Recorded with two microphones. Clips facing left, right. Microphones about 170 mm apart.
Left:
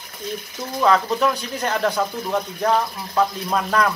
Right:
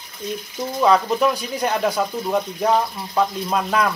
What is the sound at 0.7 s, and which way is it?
Speech, 10° right (ahead or behind).